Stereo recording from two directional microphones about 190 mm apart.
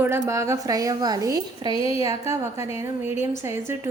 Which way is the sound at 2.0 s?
15° right (ahead or behind).